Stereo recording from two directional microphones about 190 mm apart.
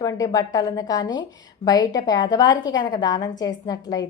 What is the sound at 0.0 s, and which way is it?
A woman's voice, 20° left (ahead or behind).